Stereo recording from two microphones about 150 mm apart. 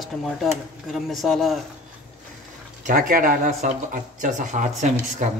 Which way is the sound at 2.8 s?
65° right (ahead or behind).